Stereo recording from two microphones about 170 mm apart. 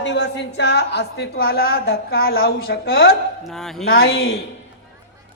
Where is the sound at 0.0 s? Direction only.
90° left; by 3.2 s 65° left (ahead or behind).